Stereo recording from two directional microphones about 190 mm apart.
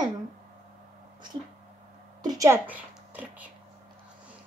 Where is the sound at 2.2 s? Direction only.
20° right (ahead or behind).